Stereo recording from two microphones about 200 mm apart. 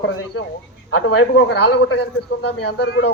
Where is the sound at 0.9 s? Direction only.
75° left (ahead or behind).